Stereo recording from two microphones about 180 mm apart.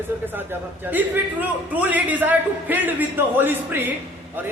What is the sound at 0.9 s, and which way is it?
A man's voice, 10° right (ahead or behind).